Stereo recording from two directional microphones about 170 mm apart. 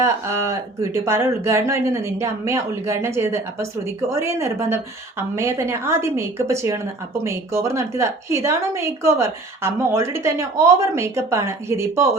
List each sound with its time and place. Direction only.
0.0 s a woman's voice: 15° right (ahead or behind)